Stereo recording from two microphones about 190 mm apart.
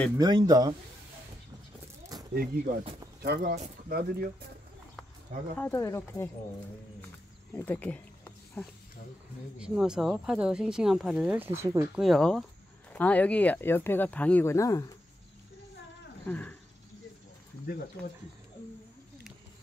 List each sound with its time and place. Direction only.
0.2 s speech: 20° right (ahead or behind)
2.3 s speech: 50° right (ahead or behind)
2.8 s speech: 25° right (ahead or behind)
3.2 s speech: 55° right (ahead or behind)
5.6 s speech: 15° left (ahead or behind)
7.5 s speech: 10° left (ahead or behind)
9.6 s speech: 5° right (ahead or behind)
11.9 s speech: centre (ahead or behind); by 15.0 s 15° left (ahead or behind)
16.3 s speech: 10° left (ahead or behind)
17.6 s speech: 55° left (ahead or behind)